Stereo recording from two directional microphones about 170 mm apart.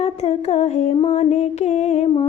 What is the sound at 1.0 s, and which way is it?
Music, 35° left (ahead or behind).